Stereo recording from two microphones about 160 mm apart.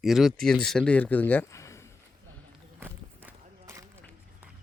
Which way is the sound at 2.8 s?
15° right (ahead or behind).